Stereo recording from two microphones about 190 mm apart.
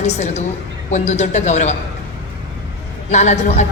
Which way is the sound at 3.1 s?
35° left (ahead or behind).